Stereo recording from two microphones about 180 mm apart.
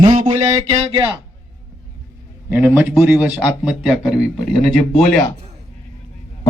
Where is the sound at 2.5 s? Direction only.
10° right (ahead or behind); by 5.2 s 5° left (ahead or behind).